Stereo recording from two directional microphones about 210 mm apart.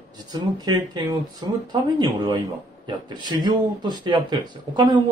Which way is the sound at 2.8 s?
20° right (ahead or behind).